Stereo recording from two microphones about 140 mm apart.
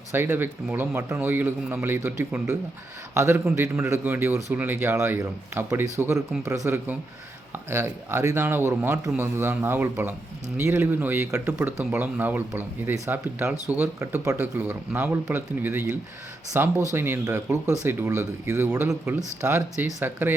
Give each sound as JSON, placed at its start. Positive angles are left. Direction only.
{"t": 0.1, "sound": "speech", "side_deg": -15}